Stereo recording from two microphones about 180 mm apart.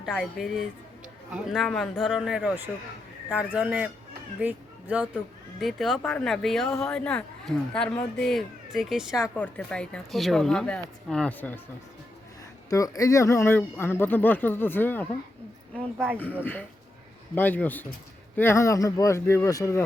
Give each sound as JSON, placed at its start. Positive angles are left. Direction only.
{"t": 0.0, "sound": "speech", "side_deg": 0}
{"t": 9.1, "sound": "speech", "side_deg": 10}
{"t": 12.7, "sound": "speech", "side_deg": 20}
{"t": 16.1, "sound": "speech", "side_deg": 10}